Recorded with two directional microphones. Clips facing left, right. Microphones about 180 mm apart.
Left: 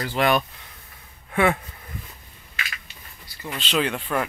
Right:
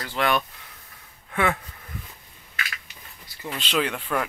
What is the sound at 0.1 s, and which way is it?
Speech, 10° left (ahead or behind).